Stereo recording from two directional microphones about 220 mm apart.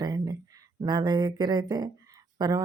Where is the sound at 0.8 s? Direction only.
20° right (ahead or behind).